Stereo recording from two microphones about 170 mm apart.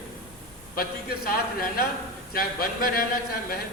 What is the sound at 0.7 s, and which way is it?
A man's voice, 60° left (ahead or behind).